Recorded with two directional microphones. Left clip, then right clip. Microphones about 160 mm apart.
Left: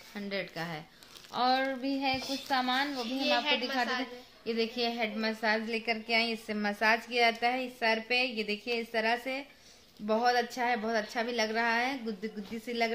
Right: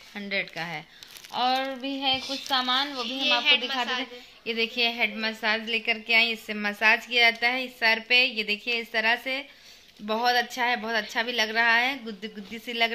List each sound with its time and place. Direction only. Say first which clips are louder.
0.1 s a woman's voice: right 7 dB; 15° right (ahead or behind)
1.3 s a sound: right 3 dB; 5° left (ahead or behind)
2.5 s a woman's voice: right 5 dB; 10° left (ahead or behind)
3.4 s a woman's voice: right 7 dB; 40° left (ahead or behind)
4.5 s a woman's voice: right 6 dB; 15° right (ahead or behind)